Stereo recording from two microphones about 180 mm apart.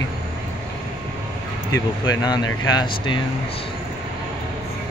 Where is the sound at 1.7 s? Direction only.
20° left (ahead or behind).